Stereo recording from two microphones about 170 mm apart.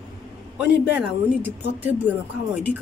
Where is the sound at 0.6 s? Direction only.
5° right (ahead or behind).